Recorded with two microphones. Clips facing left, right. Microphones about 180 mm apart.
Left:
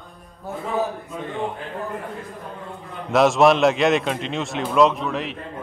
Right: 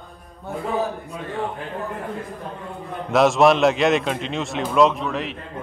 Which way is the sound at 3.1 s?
Centre (ahead or behind).